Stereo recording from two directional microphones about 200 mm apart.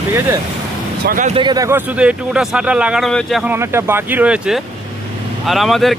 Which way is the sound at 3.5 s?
10° right (ahead or behind).